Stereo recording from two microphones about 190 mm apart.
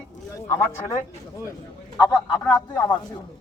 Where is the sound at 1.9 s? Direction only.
20° left (ahead or behind).